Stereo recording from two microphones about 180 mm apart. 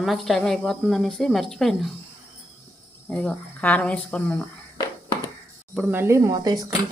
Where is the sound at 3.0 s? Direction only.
5° left (ahead or behind).